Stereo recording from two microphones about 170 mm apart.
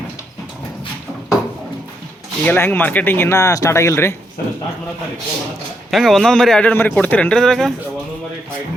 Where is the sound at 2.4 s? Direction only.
10° left (ahead or behind).